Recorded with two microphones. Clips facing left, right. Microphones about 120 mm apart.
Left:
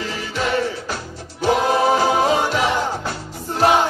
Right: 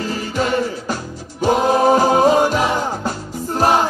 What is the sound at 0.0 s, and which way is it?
Music, 45° right (ahead or behind).